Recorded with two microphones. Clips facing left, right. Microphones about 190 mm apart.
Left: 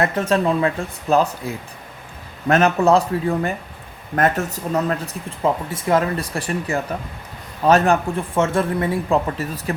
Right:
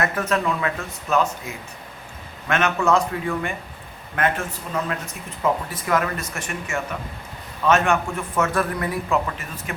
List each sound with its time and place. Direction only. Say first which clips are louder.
0.0 s speech: left 4 dB; 30° left (ahead or behind)